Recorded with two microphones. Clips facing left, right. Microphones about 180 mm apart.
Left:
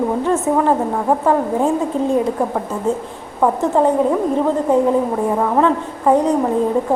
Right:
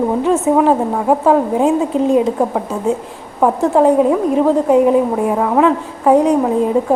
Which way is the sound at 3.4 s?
10° right (ahead or behind).